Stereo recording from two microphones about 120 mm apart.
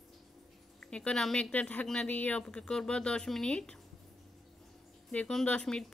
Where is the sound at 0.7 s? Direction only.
10° left (ahead or behind).